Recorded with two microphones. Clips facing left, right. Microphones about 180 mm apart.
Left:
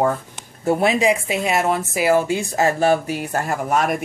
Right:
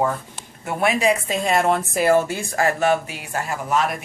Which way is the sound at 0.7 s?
25° left (ahead or behind).